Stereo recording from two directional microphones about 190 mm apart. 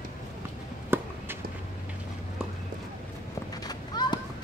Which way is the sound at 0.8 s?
10° right (ahead or behind).